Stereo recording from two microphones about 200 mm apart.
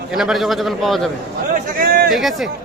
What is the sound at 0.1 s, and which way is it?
A man's voice, centre (ahead or behind).